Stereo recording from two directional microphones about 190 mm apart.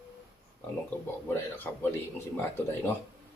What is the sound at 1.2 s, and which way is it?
Speech, 10° left (ahead or behind).